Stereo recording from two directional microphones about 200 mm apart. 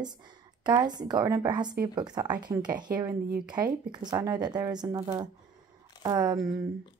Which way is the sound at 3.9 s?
20° right (ahead or behind).